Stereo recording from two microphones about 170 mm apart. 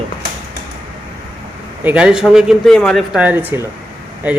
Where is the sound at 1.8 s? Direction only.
5° right (ahead or behind).